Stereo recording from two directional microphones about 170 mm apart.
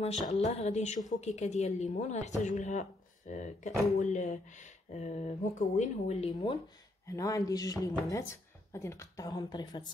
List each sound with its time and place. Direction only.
0.3 s a sound: 40° left (ahead or behind)
1.1 s speech: 45° left (ahead or behind)
7.1 s speech: 20° left (ahead or behind)